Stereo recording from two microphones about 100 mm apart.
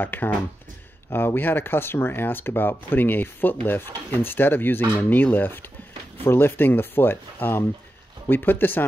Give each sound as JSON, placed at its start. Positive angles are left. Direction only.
{"t": 0.0, "sound": "speech", "side_deg": 20}